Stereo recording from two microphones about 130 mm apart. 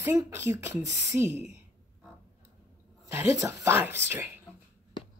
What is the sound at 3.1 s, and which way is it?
Speech, 20° right (ahead or behind).